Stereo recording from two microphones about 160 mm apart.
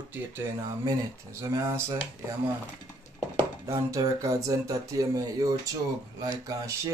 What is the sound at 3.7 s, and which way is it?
Speech, 20° right (ahead or behind).